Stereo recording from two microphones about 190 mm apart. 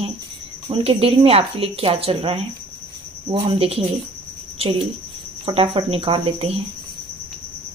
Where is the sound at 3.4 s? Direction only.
30° right (ahead or behind).